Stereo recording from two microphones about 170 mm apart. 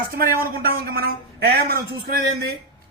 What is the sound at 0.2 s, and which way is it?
Speech, 60° right (ahead or behind).